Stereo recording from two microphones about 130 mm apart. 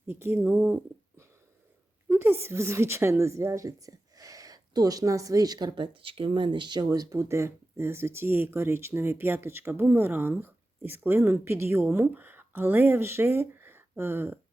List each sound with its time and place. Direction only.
0.1 s a woman's voice: 20° right (ahead or behind)